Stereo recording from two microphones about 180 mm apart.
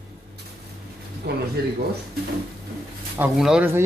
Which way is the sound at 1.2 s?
60° right (ahead or behind).